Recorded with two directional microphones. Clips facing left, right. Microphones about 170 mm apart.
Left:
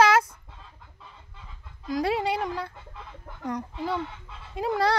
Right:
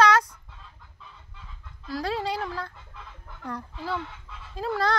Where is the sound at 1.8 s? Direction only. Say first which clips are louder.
Left 3 dB; 15° left (ahead or behind).